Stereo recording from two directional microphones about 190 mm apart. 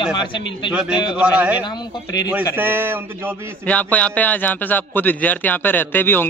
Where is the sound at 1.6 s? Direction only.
25° left (ahead or behind).